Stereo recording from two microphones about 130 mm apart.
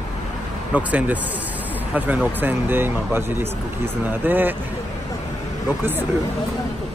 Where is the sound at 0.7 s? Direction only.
10° right (ahead or behind).